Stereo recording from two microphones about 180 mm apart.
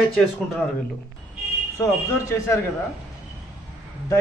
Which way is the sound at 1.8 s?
15° left (ahead or behind).